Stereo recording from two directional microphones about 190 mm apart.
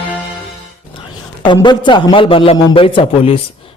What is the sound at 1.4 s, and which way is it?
A man's voice, 25° left (ahead or behind).